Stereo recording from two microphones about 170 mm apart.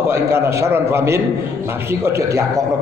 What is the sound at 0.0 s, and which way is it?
A man's voice, 15° right (ahead or behind).